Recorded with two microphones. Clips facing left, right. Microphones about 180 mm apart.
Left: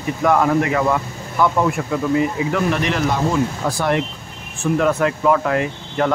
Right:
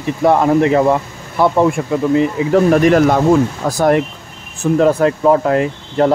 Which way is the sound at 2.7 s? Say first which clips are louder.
Right 9 dB; 45° right (ahead or behind).